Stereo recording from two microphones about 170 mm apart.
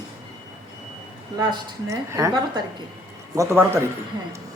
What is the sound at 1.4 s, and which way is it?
Speech, 20° right (ahead or behind).